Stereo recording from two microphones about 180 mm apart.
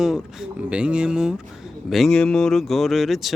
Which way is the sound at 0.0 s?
Centre (ahead or behind).